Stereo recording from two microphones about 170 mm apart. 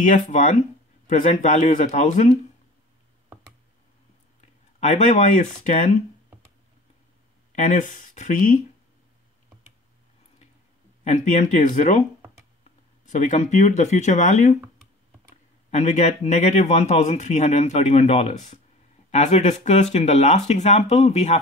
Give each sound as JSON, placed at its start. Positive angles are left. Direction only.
{"t": 0.0, "sound": "speech", "side_deg": 45}
{"t": 4.4, "sound": "speech", "side_deg": 45}
{"t": 7.5, "sound": "speech", "side_deg": 50}
{"t": 11.1, "sound": "speech", "side_deg": 45}
{"t": 13.1, "sound": "speech", "side_deg": 45}
{"t": 15.7, "sound": "speech", "side_deg": 40}